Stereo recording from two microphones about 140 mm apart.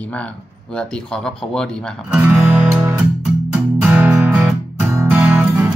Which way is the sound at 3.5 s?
10° right (ahead or behind).